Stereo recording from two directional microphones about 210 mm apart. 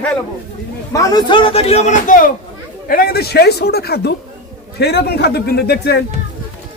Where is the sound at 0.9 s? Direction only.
20° left (ahead or behind).